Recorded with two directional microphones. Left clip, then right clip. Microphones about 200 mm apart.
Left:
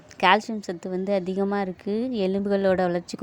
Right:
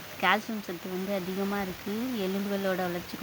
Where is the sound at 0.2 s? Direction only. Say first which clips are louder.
Left 7 dB; 25° left (ahead or behind).